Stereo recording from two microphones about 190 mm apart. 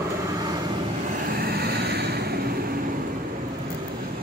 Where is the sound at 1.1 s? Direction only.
50° right (ahead or behind).